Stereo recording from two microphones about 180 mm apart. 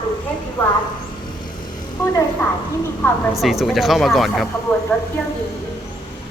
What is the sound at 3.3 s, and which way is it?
Speech, centre (ahead or behind).